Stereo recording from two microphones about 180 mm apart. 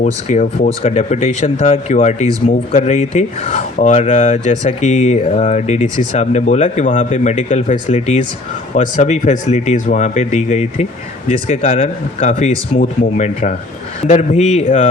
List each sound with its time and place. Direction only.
0.0 s speech: 40° left (ahead or behind)